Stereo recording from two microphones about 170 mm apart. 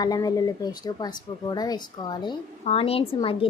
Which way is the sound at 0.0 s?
20° left (ahead or behind).